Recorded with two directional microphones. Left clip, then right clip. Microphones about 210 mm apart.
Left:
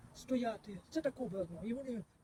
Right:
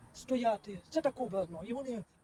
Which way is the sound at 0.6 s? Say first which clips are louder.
Right 6 dB; 15° left (ahead or behind).